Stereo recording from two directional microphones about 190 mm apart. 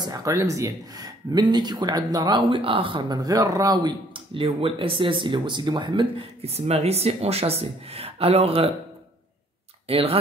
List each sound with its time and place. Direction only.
0.0 s speech: 20° right (ahead or behind)
9.8 s speech: 30° right (ahead or behind)